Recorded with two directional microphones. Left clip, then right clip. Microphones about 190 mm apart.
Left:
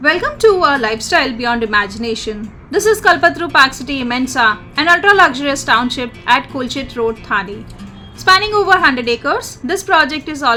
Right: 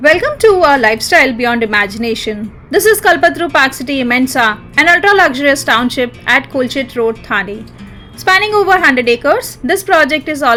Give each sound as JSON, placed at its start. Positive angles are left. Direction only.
{"t": 0.0, "sound": "a woman's voice", "side_deg": -20}